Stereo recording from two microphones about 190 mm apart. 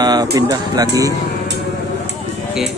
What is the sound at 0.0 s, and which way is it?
Speech, 20° right (ahead or behind).